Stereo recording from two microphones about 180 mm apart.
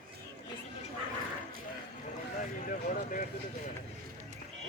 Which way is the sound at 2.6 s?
50° left (ahead or behind).